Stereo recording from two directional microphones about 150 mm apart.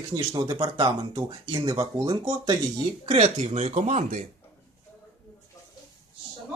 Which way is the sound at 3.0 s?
40° right (ahead or behind).